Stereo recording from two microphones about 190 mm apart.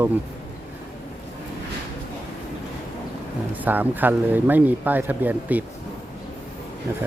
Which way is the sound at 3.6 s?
10° right (ahead or behind).